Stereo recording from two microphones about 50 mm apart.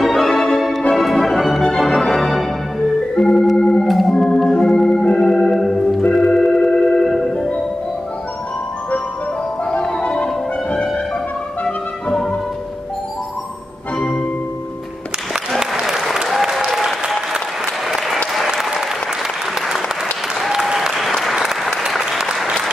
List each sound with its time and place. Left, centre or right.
0.1 s music: centre
1.9 s organ: centre
3.2 s organ: centre
3.8 s organ: centre
6.1 s music: centre
9.7 s music: centre
13.9 s music: centre
15.6 s applause: centre
20.5 s applause: centre